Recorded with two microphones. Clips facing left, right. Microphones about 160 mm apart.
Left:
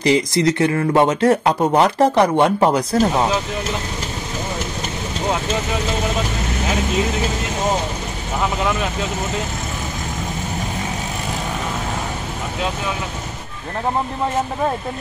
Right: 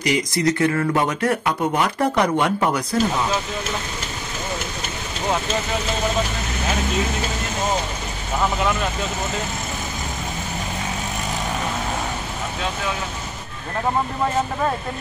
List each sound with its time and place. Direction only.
0.0 s speech: 25° left (ahead or behind)